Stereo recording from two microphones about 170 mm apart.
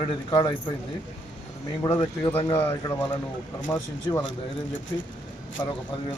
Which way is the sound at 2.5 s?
10° left (ahead or behind).